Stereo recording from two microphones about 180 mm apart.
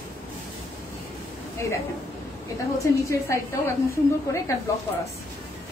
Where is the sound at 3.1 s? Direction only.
15° left (ahead or behind).